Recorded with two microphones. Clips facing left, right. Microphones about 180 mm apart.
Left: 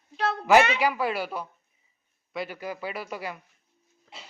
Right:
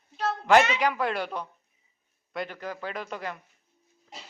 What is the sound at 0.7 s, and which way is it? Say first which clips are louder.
A man's voice: left 1 dB; 5° left (ahead or behind).